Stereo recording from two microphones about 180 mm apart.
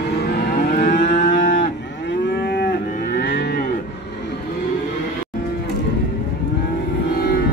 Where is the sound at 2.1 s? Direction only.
65° left (ahead or behind).